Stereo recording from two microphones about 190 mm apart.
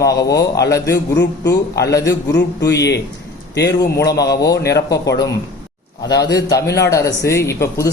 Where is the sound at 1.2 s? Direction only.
60° left (ahead or behind).